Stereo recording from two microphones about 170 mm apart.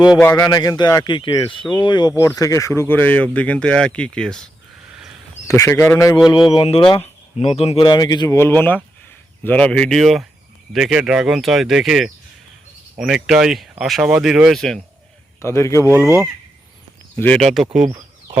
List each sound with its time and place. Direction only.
0.3 s speech: 25° left (ahead or behind); by 4.4 s 5° left (ahead or behind)
5.5 s speech: 15° left (ahead or behind)
6.2 s speech: 30° left (ahead or behind); by 14.8 s centre (ahead or behind)
15.4 s speech: 15° left (ahead or behind)
15.9 s speech: 15° right (ahead or behind)
17.2 s speech: 5° left (ahead or behind)